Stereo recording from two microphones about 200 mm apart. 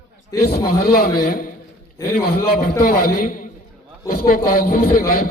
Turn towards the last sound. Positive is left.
turn(degrees=45)  # may be behind; listen again after turning